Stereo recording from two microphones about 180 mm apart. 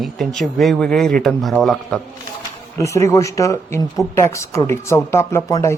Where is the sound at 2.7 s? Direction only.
15° left (ahead or behind).